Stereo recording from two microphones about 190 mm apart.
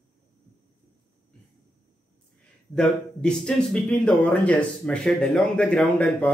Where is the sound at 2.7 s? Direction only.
5° left (ahead or behind).